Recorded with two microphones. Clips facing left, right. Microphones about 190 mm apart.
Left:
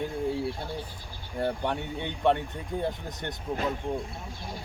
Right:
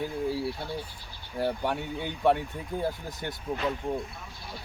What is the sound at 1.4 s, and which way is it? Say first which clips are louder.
Speech: even; 5° right (ahead or behind).